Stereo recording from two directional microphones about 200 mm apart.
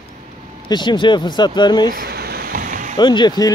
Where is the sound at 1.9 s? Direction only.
50° right (ahead or behind).